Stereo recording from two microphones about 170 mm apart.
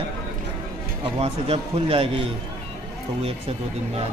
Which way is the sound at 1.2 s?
35° right (ahead or behind).